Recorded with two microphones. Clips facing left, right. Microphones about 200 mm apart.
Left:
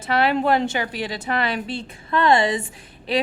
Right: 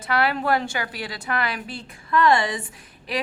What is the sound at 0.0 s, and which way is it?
A woman's voice, 25° left (ahead or behind).